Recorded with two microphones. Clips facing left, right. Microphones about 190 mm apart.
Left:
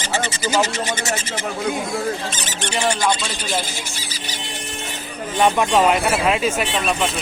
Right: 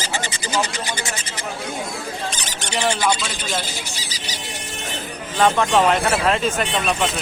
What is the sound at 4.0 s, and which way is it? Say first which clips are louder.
Music: left 1 dB; 50° left (ahead or behind).